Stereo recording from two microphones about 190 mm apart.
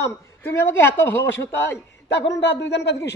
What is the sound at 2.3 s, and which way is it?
Speech, 65° left (ahead or behind).